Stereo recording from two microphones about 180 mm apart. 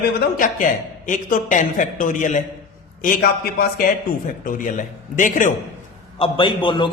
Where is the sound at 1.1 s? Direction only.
45° left (ahead or behind).